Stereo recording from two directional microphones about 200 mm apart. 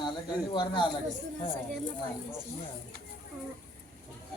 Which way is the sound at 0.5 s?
25° left (ahead or behind).